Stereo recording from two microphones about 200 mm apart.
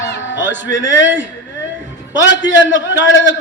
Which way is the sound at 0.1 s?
65° left (ahead or behind).